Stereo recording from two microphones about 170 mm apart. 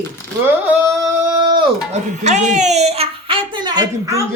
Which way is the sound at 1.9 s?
45° right (ahead or behind).